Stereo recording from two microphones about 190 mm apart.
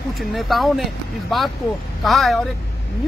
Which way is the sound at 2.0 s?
Centre (ahead or behind).